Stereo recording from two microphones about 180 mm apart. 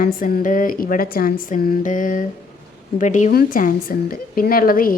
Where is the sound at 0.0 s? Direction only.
50° left (ahead or behind).